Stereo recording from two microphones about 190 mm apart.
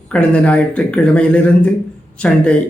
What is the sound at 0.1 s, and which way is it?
Speech, 5° left (ahead or behind).